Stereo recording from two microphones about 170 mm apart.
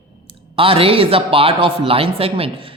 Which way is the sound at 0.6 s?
35° right (ahead or behind).